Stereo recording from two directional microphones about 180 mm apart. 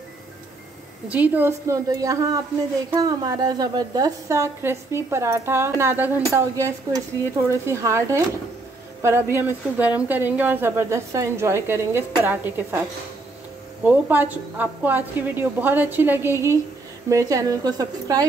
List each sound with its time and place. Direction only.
1.0 s a woman's voice: 10° right (ahead or behind)
13.8 s a woman's voice: 10° right (ahead or behind)